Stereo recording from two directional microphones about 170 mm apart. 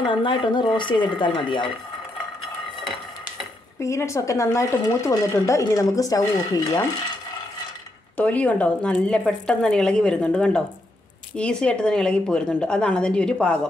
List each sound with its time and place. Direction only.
0.0 s speech: 30° left (ahead or behind)
3.8 s speech: 15° left (ahead or behind)
8.2 s speech: 10° left (ahead or behind)